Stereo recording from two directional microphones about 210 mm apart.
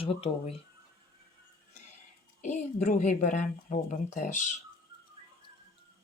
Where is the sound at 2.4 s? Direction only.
35° left (ahead or behind).